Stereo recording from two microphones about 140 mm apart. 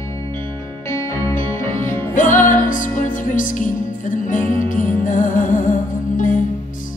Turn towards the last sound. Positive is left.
turn(degrees=65)  # may be behind; listen again after turning